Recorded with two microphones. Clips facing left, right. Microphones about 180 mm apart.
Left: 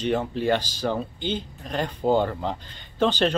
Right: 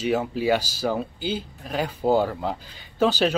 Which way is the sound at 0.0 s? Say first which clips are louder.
Right 1 dB; 5° right (ahead or behind).